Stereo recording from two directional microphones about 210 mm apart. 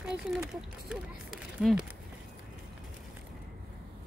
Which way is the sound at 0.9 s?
Centre (ahead or behind).